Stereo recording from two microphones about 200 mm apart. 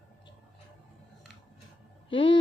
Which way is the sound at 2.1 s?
25° left (ahead or behind).